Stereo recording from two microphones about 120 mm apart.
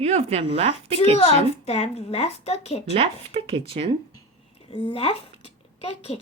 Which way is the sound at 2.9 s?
50° right (ahead or behind).